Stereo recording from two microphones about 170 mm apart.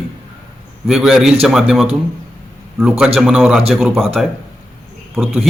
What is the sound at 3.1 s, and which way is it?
A man's voice, centre (ahead or behind).